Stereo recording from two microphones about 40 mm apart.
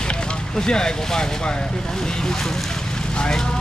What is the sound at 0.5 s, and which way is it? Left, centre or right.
Speech, centre.